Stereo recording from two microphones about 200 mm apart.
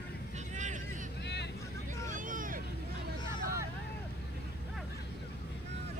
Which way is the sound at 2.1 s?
40° right (ahead or behind).